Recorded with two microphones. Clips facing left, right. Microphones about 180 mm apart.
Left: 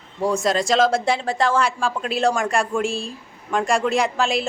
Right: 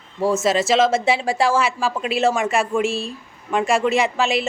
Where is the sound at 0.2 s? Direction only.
5° right (ahead or behind).